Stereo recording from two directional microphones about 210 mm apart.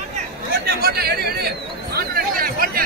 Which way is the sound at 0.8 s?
45° right (ahead or behind).